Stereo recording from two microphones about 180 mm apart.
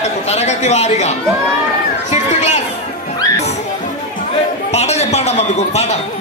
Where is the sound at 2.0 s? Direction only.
40° left (ahead or behind).